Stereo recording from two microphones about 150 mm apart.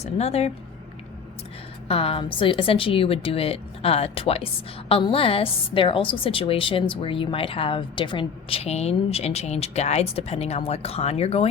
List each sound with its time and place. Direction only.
0.0 s speech: 45° left (ahead or behind)
1.9 s a woman's voice: 40° left (ahead or behind)